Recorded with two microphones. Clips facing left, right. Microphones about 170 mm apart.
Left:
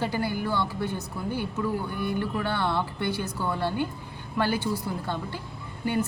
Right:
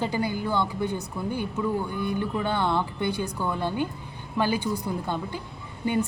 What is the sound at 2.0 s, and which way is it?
Speech, 15° right (ahead or behind).